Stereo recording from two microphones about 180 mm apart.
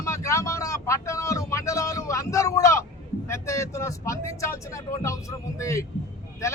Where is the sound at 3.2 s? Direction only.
15° left (ahead or behind).